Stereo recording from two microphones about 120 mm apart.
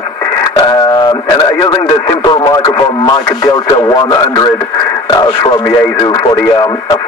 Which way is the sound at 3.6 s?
35° left (ahead or behind).